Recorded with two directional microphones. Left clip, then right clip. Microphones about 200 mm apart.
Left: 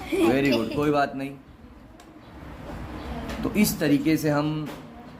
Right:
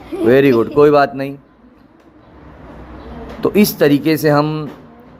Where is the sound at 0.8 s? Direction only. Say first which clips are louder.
Right 13 dB; 50° right (ahead or behind).